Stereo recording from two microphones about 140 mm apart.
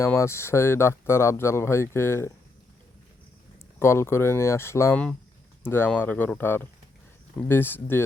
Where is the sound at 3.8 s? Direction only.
20° left (ahead or behind).